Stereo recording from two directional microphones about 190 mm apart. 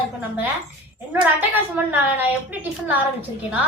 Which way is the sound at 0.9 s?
10° right (ahead or behind).